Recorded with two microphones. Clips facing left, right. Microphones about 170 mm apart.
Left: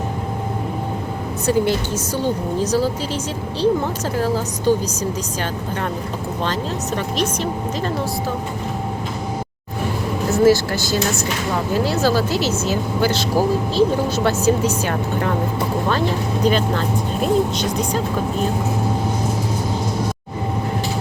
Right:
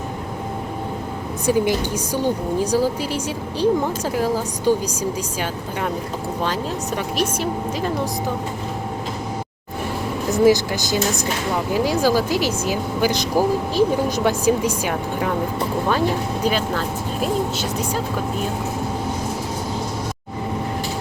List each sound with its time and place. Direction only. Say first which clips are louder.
1.5 s speech: even; 15° right (ahead or behind)
4.2 s speech: left 1 dB; 10° right (ahead or behind)
6.4 s speech: left 1 dB; 10° right (ahead or behind)
10.3 s speech: left 1 dB; 15° right (ahead or behind)